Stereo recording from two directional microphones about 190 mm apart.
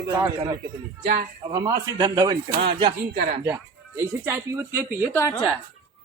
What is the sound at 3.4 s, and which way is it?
Speech, 15° right (ahead or behind).